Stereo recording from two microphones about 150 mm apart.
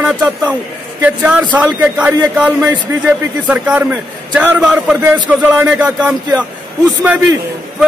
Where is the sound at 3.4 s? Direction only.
5° right (ahead or behind).